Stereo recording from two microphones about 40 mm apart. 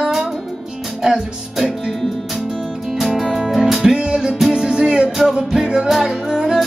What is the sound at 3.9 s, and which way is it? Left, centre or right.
Music, centre.